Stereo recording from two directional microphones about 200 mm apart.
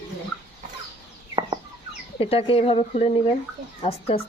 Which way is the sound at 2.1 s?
25° left (ahead or behind).